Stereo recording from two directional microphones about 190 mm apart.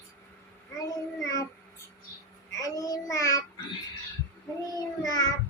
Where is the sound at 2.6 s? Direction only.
20° left (ahead or behind).